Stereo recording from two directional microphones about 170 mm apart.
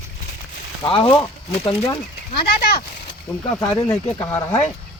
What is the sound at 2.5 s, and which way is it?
Speech, 65° left (ahead or behind).